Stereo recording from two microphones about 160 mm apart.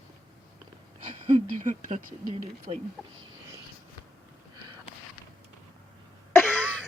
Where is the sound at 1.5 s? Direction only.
50° right (ahead or behind).